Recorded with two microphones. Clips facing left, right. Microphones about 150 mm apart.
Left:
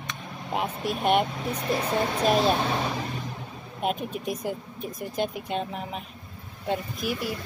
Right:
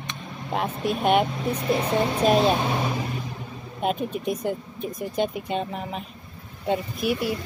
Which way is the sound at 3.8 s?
Centre (ahead or behind).